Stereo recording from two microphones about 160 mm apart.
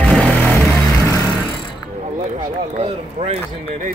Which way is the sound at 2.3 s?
50° right (ahead or behind).